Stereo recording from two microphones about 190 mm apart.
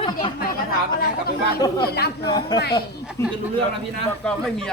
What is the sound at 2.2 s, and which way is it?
Speech, 20° left (ahead or behind).